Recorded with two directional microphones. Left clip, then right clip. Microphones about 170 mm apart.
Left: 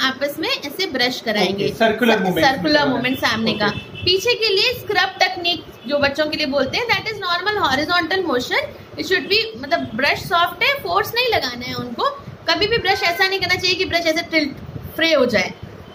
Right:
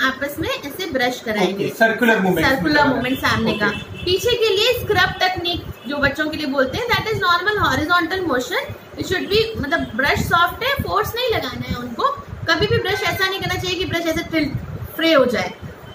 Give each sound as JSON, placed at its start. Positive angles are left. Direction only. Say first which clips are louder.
{"t": 0.0, "sound": "a woman's voice", "louder": "even", "side_deg": 55}